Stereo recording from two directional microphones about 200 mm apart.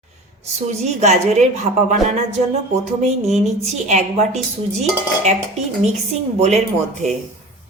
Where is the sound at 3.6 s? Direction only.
35° right (ahead or behind).